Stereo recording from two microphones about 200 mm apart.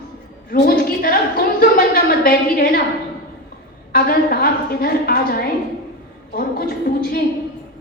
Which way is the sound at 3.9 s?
50° left (ahead or behind).